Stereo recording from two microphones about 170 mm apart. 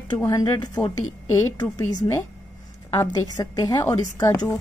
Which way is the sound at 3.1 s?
25° left (ahead or behind).